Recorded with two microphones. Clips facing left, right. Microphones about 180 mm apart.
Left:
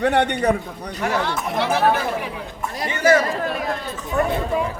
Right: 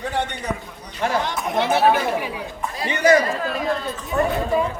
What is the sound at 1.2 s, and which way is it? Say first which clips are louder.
A man's voice: even; 15° right (ahead or behind).